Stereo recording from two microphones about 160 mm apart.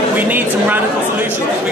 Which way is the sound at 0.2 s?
10° right (ahead or behind).